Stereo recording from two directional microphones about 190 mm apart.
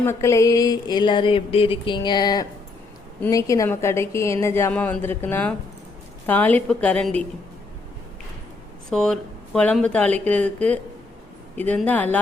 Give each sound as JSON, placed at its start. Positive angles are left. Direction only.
{"t": 0.0, "sound": "a sound", "side_deg": 15}
{"t": 3.2, "sound": "a woman's voice", "side_deg": 15}
{"t": 8.9, "sound": "a woman's voice", "side_deg": 0}